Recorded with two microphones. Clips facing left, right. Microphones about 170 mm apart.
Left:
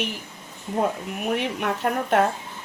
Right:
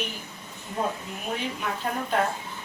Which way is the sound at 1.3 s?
65° left (ahead or behind).